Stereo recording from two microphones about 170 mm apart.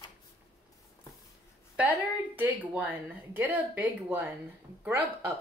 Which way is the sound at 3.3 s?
10° right (ahead or behind).